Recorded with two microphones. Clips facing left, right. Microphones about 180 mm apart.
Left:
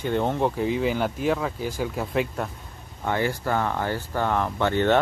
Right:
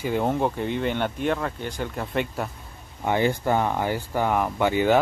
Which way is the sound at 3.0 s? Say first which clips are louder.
Right 3 dB; 20° right (ahead or behind).